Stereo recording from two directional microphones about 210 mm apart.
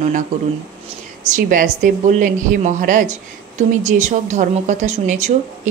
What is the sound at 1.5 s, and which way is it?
Speech, 40° right (ahead or behind).